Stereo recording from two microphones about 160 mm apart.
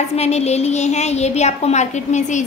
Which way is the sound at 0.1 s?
40° left (ahead or behind).